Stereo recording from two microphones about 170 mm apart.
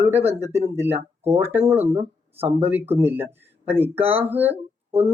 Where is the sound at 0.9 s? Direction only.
35° right (ahead or behind).